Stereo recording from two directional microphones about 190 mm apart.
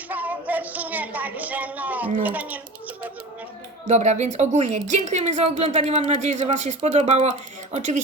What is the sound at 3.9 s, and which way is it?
Speech, 35° right (ahead or behind).